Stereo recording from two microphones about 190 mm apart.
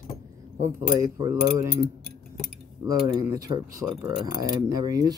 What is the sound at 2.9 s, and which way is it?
Speech, 20° right (ahead or behind).